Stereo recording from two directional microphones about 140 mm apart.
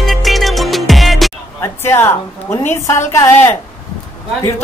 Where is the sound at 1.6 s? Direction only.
20° left (ahead or behind).